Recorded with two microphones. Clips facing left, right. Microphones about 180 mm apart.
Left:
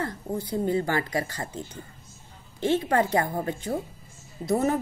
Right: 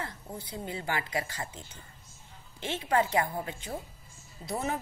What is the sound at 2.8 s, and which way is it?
A woman's voice, 40° left (ahead or behind).